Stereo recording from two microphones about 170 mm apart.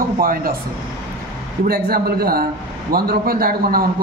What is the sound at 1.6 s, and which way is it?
Speech, 65° right (ahead or behind).